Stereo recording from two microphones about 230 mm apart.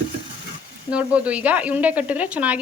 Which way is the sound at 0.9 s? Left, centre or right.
Centre.